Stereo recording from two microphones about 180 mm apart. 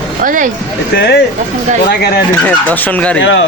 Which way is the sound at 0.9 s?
70° left (ahead or behind).